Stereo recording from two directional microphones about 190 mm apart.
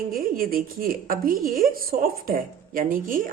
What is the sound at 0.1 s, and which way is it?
Speech, 50° right (ahead or behind).